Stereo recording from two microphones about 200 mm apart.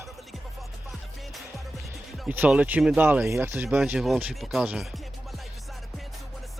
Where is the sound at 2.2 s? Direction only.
10° right (ahead or behind).